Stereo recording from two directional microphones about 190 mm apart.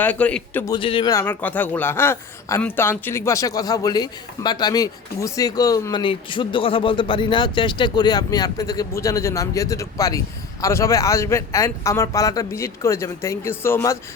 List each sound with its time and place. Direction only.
0.0 s a man's voice: 10° left (ahead or behind)
0.7 s speech: 25° left (ahead or behind)
1.2 s a man's voice: 10° left (ahead or behind)